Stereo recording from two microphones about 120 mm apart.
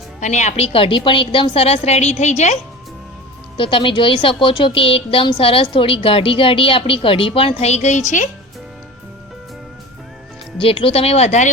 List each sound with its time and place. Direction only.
0.2 s a woman's voice: 80° left
3.6 s a woman's voice: 45° left (ahead or behind); by 8.3 s 90° left
10.6 s a woman's voice: 50° left (ahead or behind); by 11.4 s 70° left (ahead or behind)